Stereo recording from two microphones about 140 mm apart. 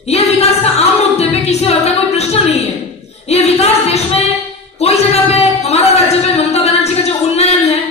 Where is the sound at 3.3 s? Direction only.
50° left (ahead or behind).